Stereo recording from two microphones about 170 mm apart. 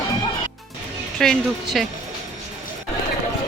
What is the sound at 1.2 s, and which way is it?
Speech, centre (ahead or behind).